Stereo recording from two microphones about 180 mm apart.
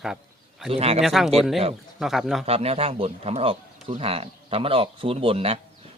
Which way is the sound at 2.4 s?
35° right (ahead or behind).